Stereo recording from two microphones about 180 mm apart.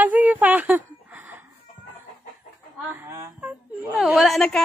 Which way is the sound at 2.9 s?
15° right (ahead or behind).